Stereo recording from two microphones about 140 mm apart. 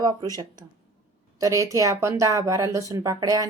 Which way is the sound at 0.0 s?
25° right (ahead or behind).